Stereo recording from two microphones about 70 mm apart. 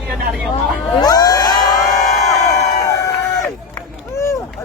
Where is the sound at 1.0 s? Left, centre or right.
Left.